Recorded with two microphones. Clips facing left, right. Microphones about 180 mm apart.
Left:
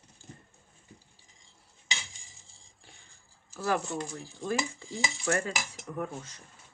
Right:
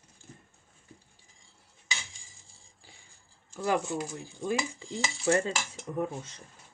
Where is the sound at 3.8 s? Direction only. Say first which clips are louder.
Right 2 dB; 5° right (ahead or behind); by 5.5 s 25° right (ahead or behind).